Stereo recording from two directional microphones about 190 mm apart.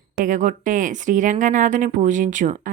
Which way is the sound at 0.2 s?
40° right (ahead or behind).